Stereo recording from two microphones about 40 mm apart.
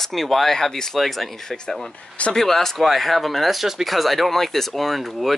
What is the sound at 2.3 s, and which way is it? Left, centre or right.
Speech, centre.